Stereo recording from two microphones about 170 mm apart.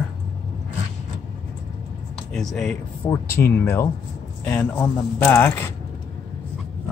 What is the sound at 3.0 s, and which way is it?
Speech, 15° left (ahead or behind).